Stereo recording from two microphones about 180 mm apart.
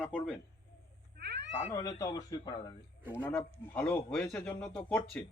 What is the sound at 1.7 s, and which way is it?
Speech, 20° left (ahead or behind).